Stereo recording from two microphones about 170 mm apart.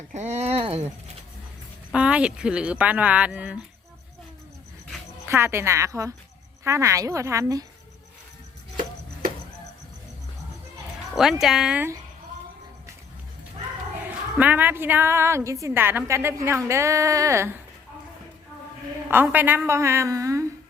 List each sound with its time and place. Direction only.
0.1 s a sound: 40° right (ahead or behind)
1.9 s a woman's voice: 5° right (ahead or behind)
5.3 s a woman's voice: 15° right (ahead or behind)
11.1 s speech: centre (ahead or behind)
14.3 s a woman's voice: 10° right (ahead or behind)
19.0 s a woman's voice: 10° right (ahead or behind)